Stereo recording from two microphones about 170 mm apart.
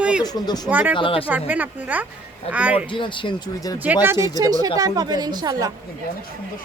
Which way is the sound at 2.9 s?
30° left (ahead or behind).